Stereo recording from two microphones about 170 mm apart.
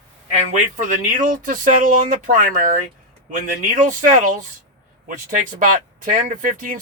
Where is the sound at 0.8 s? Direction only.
50° right (ahead or behind).